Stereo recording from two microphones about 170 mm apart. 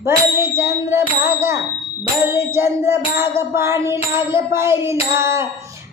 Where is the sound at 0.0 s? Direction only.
15° right (ahead or behind).